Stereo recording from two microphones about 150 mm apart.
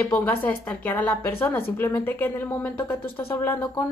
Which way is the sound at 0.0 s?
15° left (ahead or behind).